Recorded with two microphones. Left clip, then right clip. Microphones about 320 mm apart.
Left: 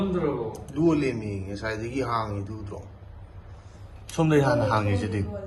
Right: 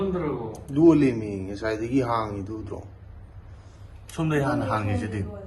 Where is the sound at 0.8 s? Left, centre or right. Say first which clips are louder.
Right 6 dB; right.